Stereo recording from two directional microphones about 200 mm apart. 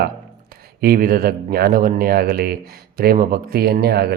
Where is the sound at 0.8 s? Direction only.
45° right (ahead or behind).